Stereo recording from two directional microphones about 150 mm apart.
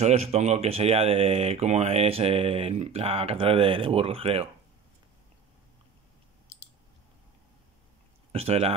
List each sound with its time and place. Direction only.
0.0 s speech: 45° right (ahead or behind)
8.3 s speech: 40° right (ahead or behind)